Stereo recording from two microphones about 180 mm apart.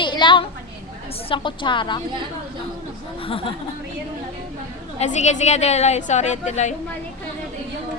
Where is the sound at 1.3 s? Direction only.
25° left (ahead or behind).